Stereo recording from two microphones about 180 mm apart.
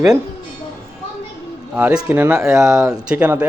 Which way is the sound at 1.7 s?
10° right (ahead or behind).